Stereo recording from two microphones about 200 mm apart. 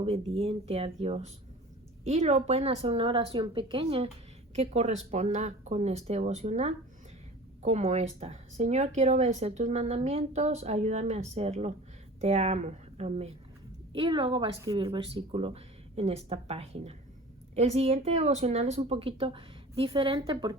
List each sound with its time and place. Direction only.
0.0 s speech: 30° right (ahead or behind)